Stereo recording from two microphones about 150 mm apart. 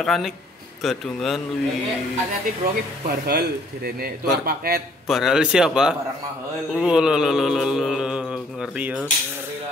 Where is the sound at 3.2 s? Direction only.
90° right.